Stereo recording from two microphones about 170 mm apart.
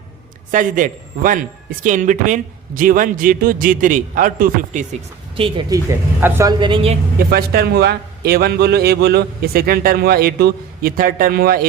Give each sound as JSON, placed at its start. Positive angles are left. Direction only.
{"t": 0.5, "sound": "a man's voice", "side_deg": -50}
{"t": 5.4, "sound": "a woman's voice", "side_deg": -25}
{"t": 7.3, "sound": "a man's voice", "side_deg": -65}